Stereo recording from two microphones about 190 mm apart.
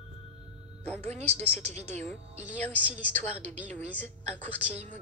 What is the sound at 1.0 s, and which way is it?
Speech, 35° right (ahead or behind).